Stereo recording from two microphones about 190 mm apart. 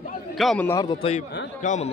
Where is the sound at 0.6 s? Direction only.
20° left (ahead or behind).